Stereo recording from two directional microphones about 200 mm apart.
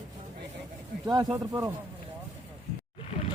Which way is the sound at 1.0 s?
20° right (ahead or behind).